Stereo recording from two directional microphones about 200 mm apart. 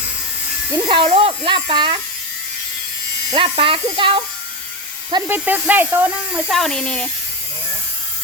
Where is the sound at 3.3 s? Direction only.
25° right (ahead or behind).